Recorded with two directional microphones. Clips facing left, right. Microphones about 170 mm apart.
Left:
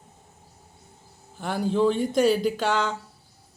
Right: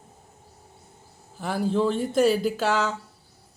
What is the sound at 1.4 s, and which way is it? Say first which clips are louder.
Speech: left 1 dB; centre (ahead or behind).